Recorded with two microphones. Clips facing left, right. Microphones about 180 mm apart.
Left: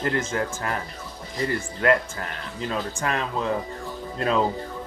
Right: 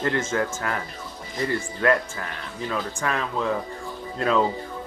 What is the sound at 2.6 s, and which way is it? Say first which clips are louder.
Speech: even; 25° left (ahead or behind).